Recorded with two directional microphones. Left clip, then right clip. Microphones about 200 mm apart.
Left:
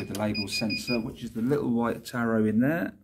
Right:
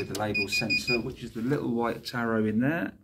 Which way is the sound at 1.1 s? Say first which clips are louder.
Left 3 dB; 55° left (ahead or behind).